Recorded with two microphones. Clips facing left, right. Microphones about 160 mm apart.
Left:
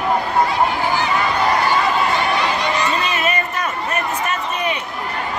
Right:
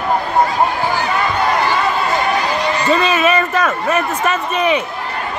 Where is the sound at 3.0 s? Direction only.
90° right.